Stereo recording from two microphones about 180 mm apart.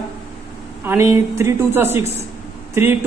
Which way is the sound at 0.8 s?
15° right (ahead or behind).